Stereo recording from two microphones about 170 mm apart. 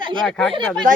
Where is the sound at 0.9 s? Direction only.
50° right (ahead or behind).